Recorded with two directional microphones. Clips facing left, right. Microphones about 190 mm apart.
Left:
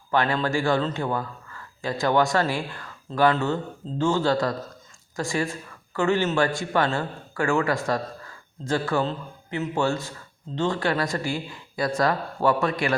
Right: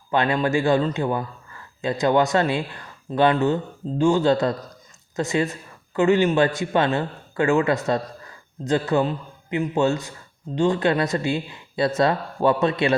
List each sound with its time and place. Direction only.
0.1 s a man's voice: 20° right (ahead or behind)